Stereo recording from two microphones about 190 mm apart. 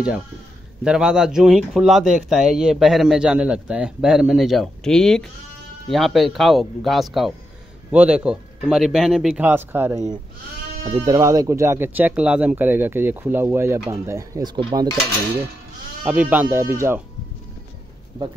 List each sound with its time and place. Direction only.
0.8 s speech: 5° right (ahead or behind); by 14.9 s 20° right (ahead or behind)
16.0 s speech: 10° right (ahead or behind)